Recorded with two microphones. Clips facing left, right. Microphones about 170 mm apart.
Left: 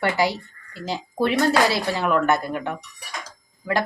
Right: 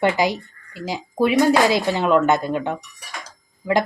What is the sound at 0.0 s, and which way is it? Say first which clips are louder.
Speech: right 3 dB; 20° right (ahead or behind).